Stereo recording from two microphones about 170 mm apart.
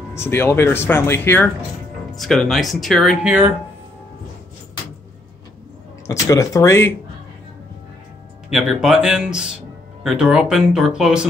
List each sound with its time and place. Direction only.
0.1 s speech: 15° left (ahead or behind)
2.1 s speech: centre (ahead or behind)
6.0 s speech: 20° left (ahead or behind)
8.5 s speech: centre (ahead or behind)